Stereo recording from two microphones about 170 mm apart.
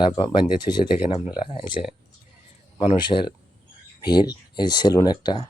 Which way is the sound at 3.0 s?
25° left (ahead or behind).